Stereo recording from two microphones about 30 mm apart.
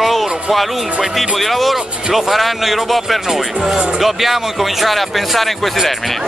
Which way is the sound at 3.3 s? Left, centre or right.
Centre.